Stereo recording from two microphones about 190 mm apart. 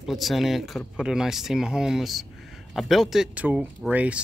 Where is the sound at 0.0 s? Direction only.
Centre (ahead or behind).